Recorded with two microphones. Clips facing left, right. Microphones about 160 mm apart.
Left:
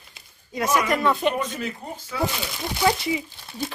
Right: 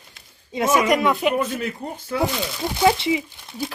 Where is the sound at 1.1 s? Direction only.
5° right (ahead or behind).